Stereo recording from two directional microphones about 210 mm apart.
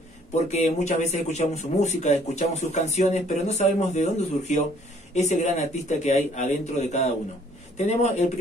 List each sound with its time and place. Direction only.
0.3 s speech: 30° left (ahead or behind)